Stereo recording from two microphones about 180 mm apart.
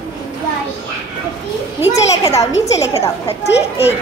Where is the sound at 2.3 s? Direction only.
35° left (ahead or behind).